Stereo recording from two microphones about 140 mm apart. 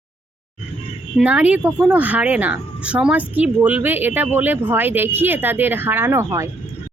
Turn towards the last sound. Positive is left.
turn(degrees=-20)  # may be behind; listen again after turning